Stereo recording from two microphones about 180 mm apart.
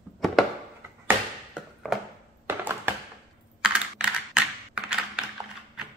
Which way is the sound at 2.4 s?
10° right (ahead or behind).